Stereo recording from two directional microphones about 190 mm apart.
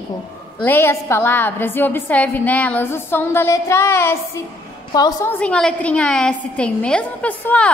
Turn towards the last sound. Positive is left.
turn(degrees=5)  # may be behind; listen again after turning